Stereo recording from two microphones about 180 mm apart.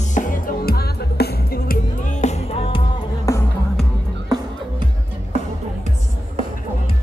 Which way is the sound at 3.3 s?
15° left (ahead or behind).